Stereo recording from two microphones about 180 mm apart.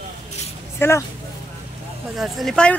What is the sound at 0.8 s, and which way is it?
Speech, 10° left (ahead or behind).